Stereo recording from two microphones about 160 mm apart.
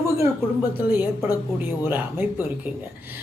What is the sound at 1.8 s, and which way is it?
Speech, 10° right (ahead or behind).